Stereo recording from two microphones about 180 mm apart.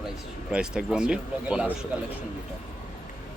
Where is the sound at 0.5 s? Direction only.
5° right (ahead or behind).